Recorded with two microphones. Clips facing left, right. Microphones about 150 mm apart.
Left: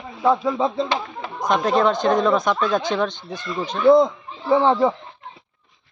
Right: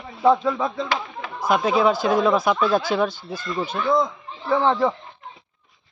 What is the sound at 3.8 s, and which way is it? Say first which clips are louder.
Speech: left 9 dB; 25° left (ahead or behind).